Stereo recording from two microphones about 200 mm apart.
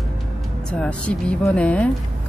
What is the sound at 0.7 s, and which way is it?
Speech, 5° left (ahead or behind).